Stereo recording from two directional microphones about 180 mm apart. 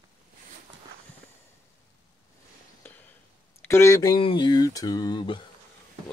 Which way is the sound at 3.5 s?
15° left (ahead or behind).